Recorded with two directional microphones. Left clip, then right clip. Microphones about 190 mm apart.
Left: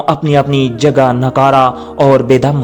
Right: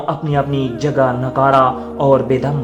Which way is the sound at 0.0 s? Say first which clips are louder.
Left 7 dB; 35° left (ahead or behind).